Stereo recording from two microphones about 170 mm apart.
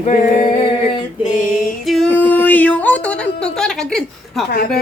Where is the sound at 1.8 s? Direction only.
Centre (ahead or behind).